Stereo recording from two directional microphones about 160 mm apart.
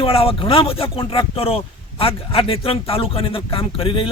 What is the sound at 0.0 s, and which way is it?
A man's voice, 35° left (ahead or behind).